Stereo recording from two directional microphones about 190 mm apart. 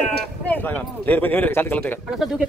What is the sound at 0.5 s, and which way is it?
Speech, 10° left (ahead or behind).